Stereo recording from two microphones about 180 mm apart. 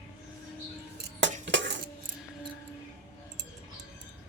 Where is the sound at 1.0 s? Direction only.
85° right.